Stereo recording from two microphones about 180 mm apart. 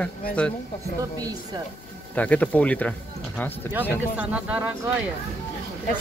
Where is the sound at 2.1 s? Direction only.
10° left (ahead or behind).